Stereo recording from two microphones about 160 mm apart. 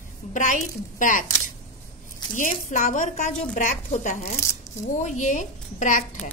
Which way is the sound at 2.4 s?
55° left (ahead or behind).